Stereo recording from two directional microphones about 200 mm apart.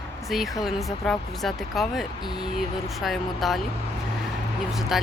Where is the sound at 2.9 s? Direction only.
Centre (ahead or behind).